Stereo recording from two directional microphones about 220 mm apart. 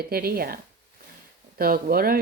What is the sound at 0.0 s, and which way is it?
Speech, 45° right (ahead or behind).